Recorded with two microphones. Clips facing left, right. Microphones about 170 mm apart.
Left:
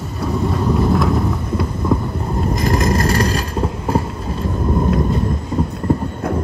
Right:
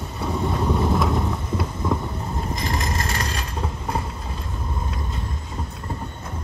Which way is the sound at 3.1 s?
35° left (ahead or behind).